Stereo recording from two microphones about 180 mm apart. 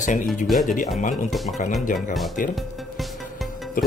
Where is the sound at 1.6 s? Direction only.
45° left (ahead or behind).